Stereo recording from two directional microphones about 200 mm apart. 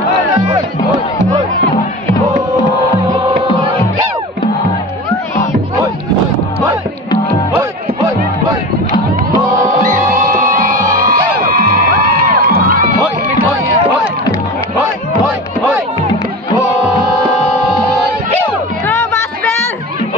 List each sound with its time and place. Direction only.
9.8 s music: 45° right (ahead or behind)